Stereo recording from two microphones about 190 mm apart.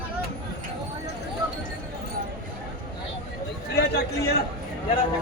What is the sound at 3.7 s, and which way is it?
Chatter, 60° left (ahead or behind).